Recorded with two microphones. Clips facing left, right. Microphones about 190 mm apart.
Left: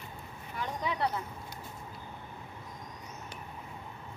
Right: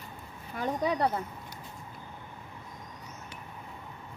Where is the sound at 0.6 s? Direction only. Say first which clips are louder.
Right 5 dB; 45° right (ahead or behind).